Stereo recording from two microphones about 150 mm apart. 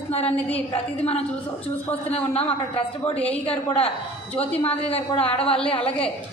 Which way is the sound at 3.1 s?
10° left (ahead or behind).